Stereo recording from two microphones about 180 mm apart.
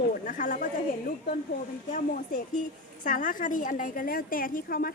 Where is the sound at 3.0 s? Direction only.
45° left (ahead or behind).